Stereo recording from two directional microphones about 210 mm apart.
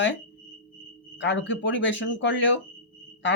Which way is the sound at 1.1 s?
60° left (ahead or behind).